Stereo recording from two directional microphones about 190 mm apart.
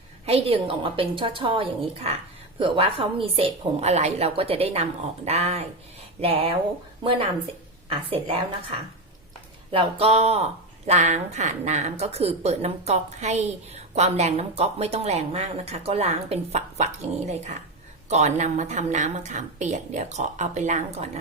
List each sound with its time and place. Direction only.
0.3 s a woman's voice: 30° right (ahead or behind)
9.7 s speech: 30° right (ahead or behind)